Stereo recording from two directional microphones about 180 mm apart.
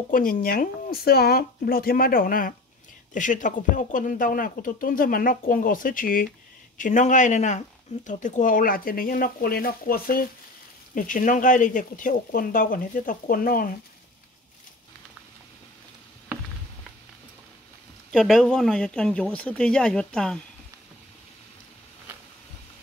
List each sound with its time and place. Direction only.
0.1 s speech: 50° left (ahead or behind)
18.1 s speech: centre (ahead or behind)